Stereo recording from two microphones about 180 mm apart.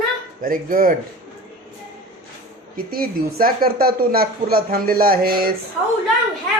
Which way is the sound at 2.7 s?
55° right (ahead or behind).